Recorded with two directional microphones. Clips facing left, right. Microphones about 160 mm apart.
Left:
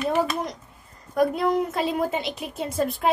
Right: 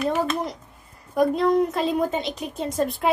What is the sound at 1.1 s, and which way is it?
A woman's voice, 5° left (ahead or behind).